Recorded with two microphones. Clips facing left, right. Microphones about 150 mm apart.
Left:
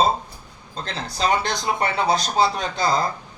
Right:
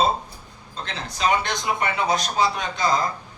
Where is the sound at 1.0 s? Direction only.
35° left (ahead or behind).